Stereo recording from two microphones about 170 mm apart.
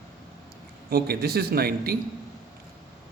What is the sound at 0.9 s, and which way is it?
A man's voice, 65° right (ahead or behind).